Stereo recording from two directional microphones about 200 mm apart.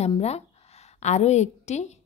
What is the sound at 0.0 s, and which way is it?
A woman's voice, 30° left (ahead or behind).